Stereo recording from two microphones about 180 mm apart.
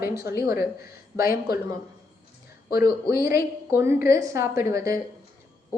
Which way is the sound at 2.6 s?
60° left (ahead or behind).